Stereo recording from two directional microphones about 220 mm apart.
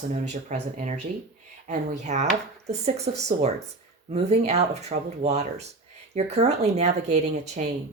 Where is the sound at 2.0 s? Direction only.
30° right (ahead or behind).